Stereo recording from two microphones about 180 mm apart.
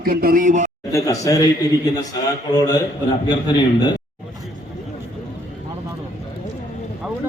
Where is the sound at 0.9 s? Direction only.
15° left (ahead or behind).